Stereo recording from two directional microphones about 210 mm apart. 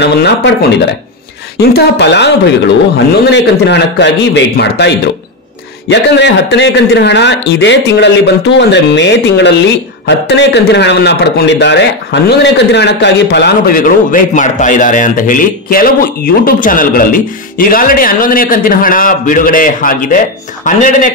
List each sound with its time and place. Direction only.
0.0 s a man's voice: 55° left (ahead or behind)
1.7 s a man's voice: 55° left (ahead or behind); by 21.1 s 40° left (ahead or behind)